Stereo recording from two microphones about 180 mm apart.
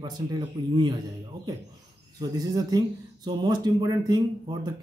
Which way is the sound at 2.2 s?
20° right (ahead or behind).